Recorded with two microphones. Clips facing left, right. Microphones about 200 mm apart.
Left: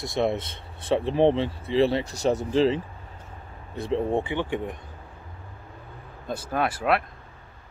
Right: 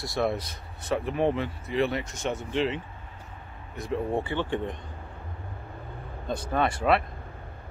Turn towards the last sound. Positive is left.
turn(degrees=5)  # may be behind; listen again after turning